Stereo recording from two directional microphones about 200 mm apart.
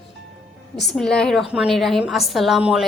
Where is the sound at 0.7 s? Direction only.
Centre (ahead or behind).